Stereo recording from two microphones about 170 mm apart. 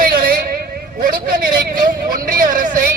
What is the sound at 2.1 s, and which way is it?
Speech, 55° right (ahead or behind).